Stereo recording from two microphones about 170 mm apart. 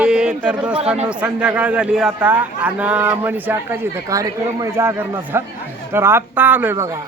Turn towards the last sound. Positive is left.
turn(degrees=-15)  # may be behind; listen again after turning